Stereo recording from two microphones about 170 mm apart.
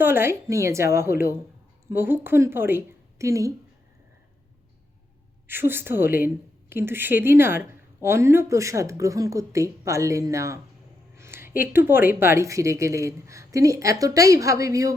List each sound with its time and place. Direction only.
0.0 s a woman's voice: 15° right (ahead or behind)
5.5 s a woman's voice: 15° right (ahead or behind)